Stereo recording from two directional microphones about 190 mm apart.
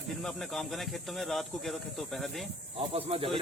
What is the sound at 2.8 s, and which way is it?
Speech, 30° right (ahead or behind).